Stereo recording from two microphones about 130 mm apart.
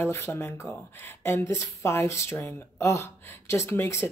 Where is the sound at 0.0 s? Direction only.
20° left (ahead or behind).